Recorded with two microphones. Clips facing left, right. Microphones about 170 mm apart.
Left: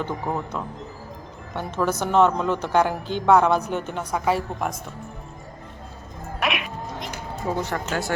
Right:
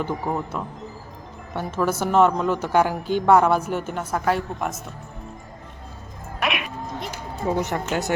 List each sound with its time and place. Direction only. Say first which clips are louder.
0.0 s a woman's voice: right 1 dB; 5° right (ahead or behind)
6.4 s cat: even; centre (ahead or behind)
7.5 s speech: right 2 dB; 20° right (ahead or behind)